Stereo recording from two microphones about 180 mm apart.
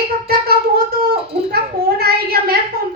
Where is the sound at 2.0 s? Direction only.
60° right (ahead or behind).